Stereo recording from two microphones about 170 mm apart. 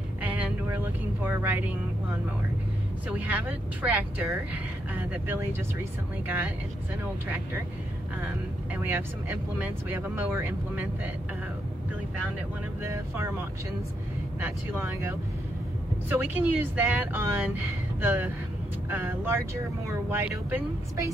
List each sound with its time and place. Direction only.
0.2 s vehicle: 10° right (ahead or behind)
3.1 s speech: 10° right (ahead or behind)
8.7 s speech: 15° right (ahead or behind)
12.8 s speech: 15° right (ahead or behind)